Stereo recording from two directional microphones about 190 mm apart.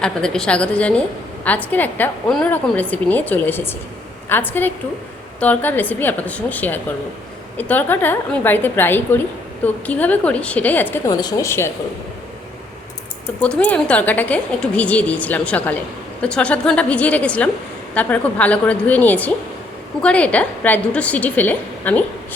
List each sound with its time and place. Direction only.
0.0 s a woman's voice: 5° left (ahead or behind)
13.4 s a woman's voice: 5° left (ahead or behind)